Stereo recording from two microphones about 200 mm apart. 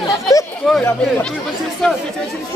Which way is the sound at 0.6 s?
Centre (ahead or behind).